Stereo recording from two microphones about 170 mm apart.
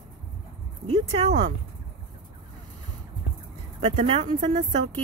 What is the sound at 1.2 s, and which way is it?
Speech, 40° right (ahead or behind).